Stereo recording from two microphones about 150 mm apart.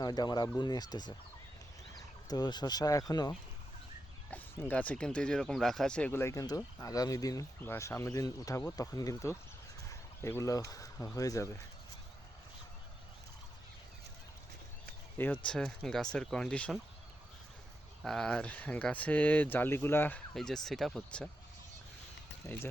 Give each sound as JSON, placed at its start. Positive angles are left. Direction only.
{"t": 0.0, "sound": "speech", "side_deg": 25}
{"t": 4.7, "sound": "speech", "side_deg": 10}
{"t": 15.4, "sound": "speech", "side_deg": 5}
{"t": 18.0, "sound": "speech", "side_deg": 5}
{"t": 20.3, "sound": "speech", "side_deg": 0}
{"t": 22.4, "sound": "speech", "side_deg": 20}